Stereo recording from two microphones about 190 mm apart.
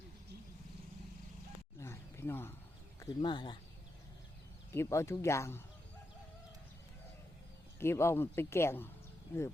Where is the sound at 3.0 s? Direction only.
25° left (ahead or behind).